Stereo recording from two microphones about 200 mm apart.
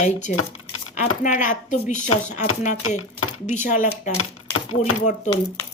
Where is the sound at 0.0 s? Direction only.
35° left (ahead or behind).